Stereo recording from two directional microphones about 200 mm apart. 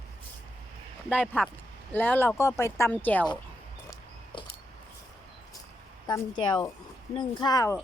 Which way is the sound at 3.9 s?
25° left (ahead or behind).